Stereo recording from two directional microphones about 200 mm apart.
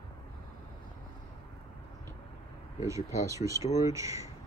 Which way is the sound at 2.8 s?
15° right (ahead or behind).